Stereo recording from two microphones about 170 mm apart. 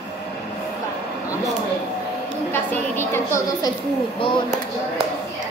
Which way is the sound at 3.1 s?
15° left (ahead or behind).